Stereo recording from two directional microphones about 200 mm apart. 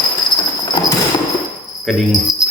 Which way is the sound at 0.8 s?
20° left (ahead or behind).